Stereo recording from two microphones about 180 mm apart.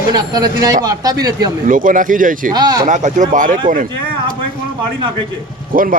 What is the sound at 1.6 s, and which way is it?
Speech, 50° right (ahead or behind).